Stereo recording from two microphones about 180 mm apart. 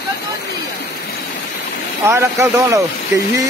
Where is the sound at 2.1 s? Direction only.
15° right (ahead or behind).